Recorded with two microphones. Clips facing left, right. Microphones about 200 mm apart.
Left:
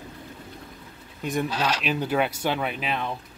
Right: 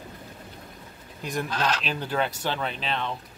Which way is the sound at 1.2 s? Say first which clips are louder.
Left 2 dB; 5° left (ahead or behind).